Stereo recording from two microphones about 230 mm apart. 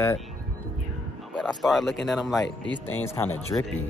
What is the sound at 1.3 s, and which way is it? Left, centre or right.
Speech, centre.